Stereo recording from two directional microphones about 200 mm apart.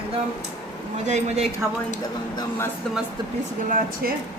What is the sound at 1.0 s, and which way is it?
Speech, 35° right (ahead or behind).